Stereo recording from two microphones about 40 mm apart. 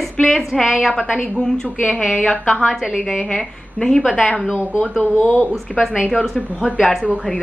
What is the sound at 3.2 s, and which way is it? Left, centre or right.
A woman's voice, centre.